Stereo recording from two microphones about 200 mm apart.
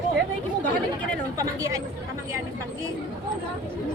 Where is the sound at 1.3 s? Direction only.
15° right (ahead or behind).